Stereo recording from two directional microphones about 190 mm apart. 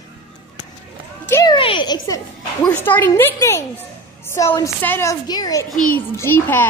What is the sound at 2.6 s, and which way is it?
A woman's voice, 10° left (ahead or behind).